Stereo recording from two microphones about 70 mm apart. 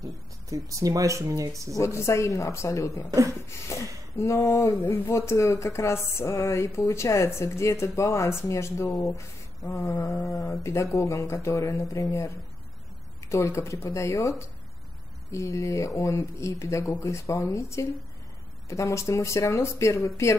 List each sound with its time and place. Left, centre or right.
0.5 s speech: right
1.8 s speech: left
3.4 s a sound: left
4.2 s speech: left
15.3 s speech: left